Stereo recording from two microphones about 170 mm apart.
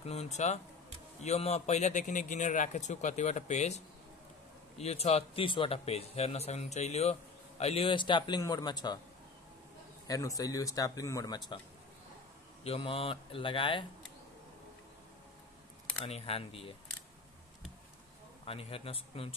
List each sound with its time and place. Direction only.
0.0 s speech: 40° left (ahead or behind)
10.0 s speech: 20° left (ahead or behind)
12.6 s speech: 35° left (ahead or behind)
16.1 s speech: 35° left (ahead or behind)
18.4 s speech: 35° left (ahead or behind)